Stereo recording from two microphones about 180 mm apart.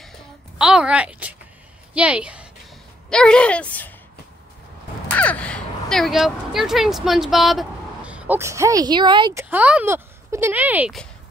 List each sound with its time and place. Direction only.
0.6 s a woman's voice: 5° right (ahead or behind)
3.1 s a woman's voice: 5° left (ahead or behind)
5.1 s speech: 10° left (ahead or behind); by 9.3 s 25° right (ahead or behind)
9.3 s speech: 10° right (ahead or behind)